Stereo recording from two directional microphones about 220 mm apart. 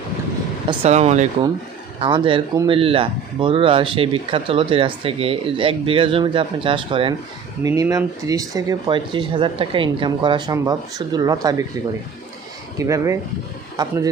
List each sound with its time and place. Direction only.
0.7 s speech: 25° right (ahead or behind)
12.7 s speech: 15° right (ahead or behind)